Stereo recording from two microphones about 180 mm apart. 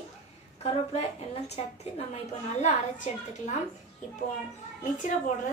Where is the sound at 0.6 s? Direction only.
35° left (ahead or behind).